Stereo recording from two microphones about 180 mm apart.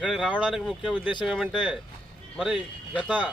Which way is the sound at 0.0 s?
5° right (ahead or behind).